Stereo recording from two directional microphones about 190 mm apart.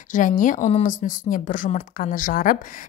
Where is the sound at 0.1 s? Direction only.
45° left (ahead or behind).